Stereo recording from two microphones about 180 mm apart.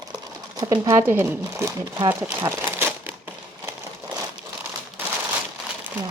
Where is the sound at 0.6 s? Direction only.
15° right (ahead or behind).